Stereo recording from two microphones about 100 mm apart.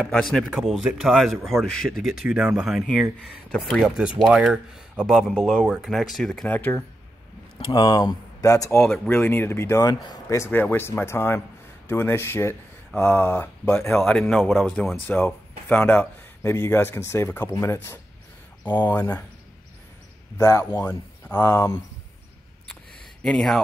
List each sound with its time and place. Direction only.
0.0 s speech: 10° left (ahead or behind)
4.3 s speech: 10° right (ahead or behind)
6.5 s speech: 20° left (ahead or behind)
7.5 s speech: 50° left (ahead or behind); by 8.8 s 30° left (ahead or behind)
8.8 s speech: centre (ahead or behind)
9.1 s speech: 20° left (ahead or behind)
15.0 s speech: 20° left (ahead or behind)
20.3 s speech: 30° left (ahead or behind)
23.2 s speech: 5° left (ahead or behind)